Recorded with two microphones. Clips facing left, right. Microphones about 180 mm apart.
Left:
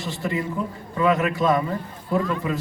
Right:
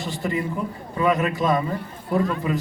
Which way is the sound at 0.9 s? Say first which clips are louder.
Left 1 dB; 20° right (ahead or behind).